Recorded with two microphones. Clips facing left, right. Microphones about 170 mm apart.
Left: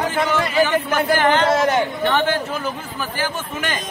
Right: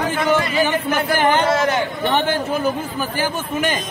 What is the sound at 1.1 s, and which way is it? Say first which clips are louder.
Speech: right 1 dB; 15° right (ahead or behind).